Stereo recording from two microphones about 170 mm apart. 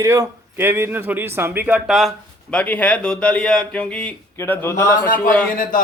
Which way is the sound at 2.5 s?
10° left (ahead or behind).